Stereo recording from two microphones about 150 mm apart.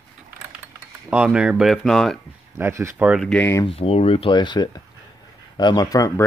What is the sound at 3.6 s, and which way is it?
Speech, 40° left (ahead or behind).